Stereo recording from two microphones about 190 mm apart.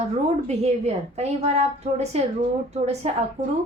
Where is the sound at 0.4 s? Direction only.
35° right (ahead or behind).